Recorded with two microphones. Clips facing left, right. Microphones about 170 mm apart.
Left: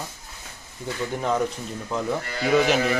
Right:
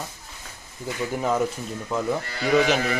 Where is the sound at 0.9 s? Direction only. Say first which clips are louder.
Right 1 dB; 10° right (ahead or behind).